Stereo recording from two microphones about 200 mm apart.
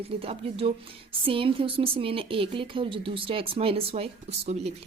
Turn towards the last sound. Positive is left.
turn(degrees=-30)  # may be behind; listen again after turning